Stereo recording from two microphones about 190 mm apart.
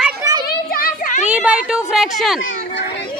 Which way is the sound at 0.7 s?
50° left (ahead or behind).